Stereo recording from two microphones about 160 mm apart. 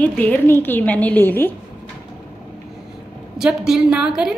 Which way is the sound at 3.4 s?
5° right (ahead or behind).